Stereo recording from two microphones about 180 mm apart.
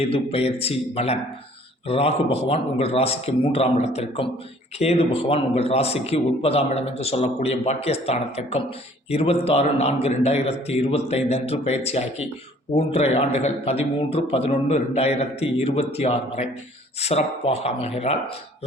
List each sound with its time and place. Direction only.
0.0 s a man's voice: 35° left (ahead or behind)